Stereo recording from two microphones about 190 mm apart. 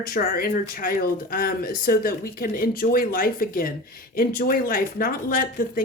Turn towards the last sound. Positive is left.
turn(degrees=50)  # may be behind; listen again after turning